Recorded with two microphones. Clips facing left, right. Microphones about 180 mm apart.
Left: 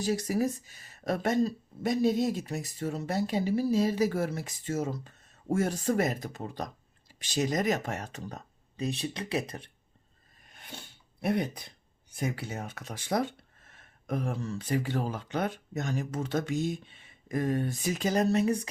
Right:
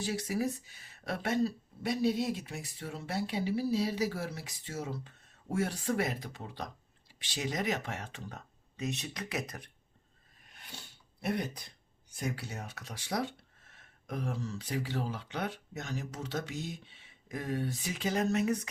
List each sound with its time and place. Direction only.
0.0 s speech: 40° left (ahead or behind)
11.2 s speech: 60° left (ahead or behind); by 18.7 s 30° left (ahead or behind)